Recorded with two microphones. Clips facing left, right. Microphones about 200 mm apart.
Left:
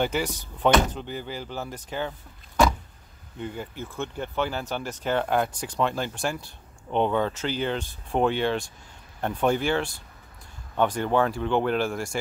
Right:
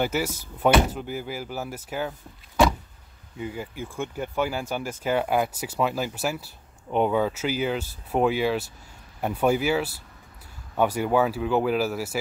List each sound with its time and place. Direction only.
0.0 s speech: 5° right (ahead or behind)